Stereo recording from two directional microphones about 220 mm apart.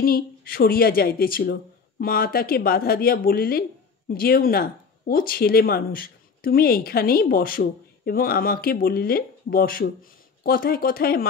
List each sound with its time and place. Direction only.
0.0 s speech: 40° left (ahead or behind)